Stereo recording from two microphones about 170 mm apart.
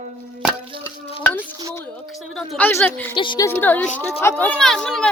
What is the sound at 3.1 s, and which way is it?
Speech, 25° left (ahead or behind).